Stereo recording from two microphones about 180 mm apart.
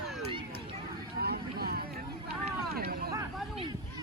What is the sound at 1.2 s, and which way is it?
Vehicle, 60° right (ahead or behind).